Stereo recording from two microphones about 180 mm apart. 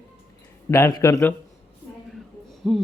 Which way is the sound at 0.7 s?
20° left (ahead or behind).